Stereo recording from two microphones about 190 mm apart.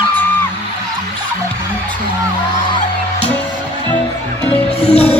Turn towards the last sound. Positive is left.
turn(degrees=35)  # may be behind; listen again after turning